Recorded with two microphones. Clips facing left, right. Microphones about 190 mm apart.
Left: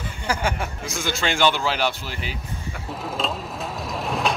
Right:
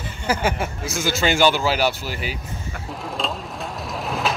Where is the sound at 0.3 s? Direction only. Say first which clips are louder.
Right 3 dB; 5° right (ahead or behind).